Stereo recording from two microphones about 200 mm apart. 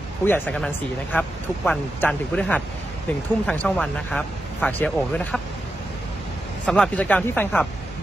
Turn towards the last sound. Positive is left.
turn(degrees=10)  # may be behind; listen again after turning